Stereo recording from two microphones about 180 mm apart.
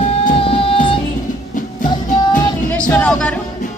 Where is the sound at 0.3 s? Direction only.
30° left (ahead or behind).